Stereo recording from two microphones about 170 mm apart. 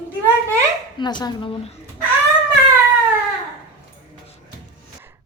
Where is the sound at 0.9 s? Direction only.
25° left (ahead or behind).